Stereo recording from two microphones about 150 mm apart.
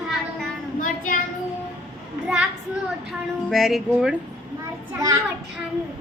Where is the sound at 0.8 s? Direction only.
65° left (ahead or behind).